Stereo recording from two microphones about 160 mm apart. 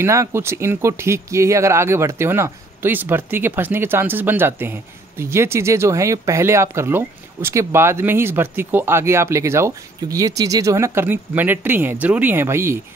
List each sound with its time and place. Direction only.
0.0 s speech: 15° right (ahead or behind)